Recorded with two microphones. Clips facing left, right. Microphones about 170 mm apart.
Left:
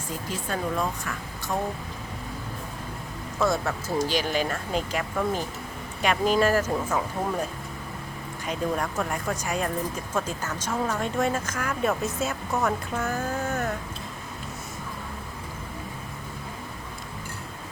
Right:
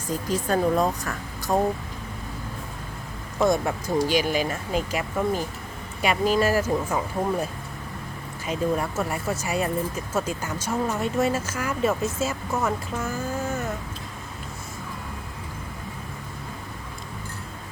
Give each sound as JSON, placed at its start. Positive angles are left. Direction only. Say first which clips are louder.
{"t": 0.3, "sound": "speech", "louder": "right 8 dB", "side_deg": -40}
{"t": 3.3, "sound": "speech", "louder": "right 3 dB", "side_deg": -15}
{"t": 8.4, "sound": "speech", "louder": "right 3 dB", "side_deg": -5}